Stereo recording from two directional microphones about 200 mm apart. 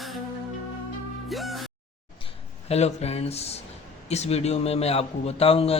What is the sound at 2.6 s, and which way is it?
A man's voice, 30° left (ahead or behind).